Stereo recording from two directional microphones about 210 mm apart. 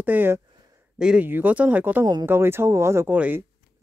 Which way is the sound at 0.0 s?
10° right (ahead or behind).